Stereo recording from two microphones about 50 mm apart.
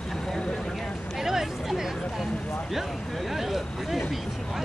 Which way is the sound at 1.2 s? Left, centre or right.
Centre.